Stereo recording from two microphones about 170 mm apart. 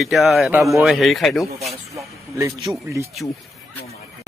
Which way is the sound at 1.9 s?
20° right (ahead or behind).